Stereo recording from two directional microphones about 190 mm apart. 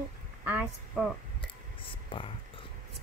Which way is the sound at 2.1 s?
25° left (ahead or behind).